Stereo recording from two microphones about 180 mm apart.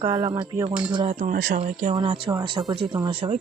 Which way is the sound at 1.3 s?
55° right (ahead or behind).